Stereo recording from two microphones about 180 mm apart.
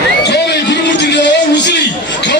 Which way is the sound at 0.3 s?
70° left (ahead or behind).